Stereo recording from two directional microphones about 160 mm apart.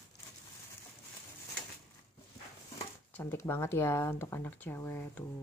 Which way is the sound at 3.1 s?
15° left (ahead or behind).